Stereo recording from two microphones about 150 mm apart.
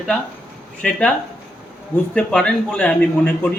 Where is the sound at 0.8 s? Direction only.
5° left (ahead or behind).